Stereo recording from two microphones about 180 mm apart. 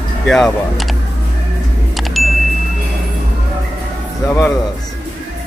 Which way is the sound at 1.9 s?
Centre (ahead or behind).